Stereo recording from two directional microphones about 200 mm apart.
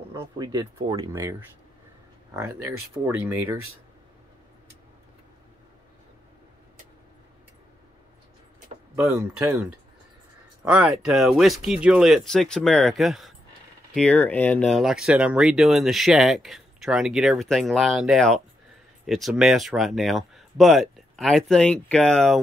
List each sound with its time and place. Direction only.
0.1 s speech: 15° right (ahead or behind)
3.1 s speech: 10° right (ahead or behind)
8.9 s speech: 10° right (ahead or behind)